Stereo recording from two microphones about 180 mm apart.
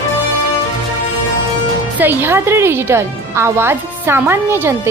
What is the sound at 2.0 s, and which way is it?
Speech, 10° right (ahead or behind).